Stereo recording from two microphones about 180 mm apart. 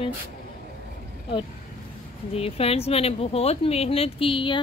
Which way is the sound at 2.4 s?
35° left (ahead or behind).